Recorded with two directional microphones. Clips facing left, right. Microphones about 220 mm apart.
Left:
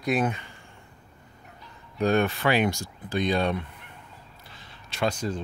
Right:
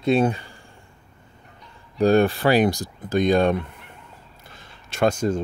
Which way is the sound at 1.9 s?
35° right (ahead or behind).